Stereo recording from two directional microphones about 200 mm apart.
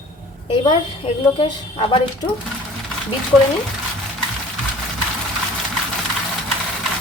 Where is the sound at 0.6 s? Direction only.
25° left (ahead or behind).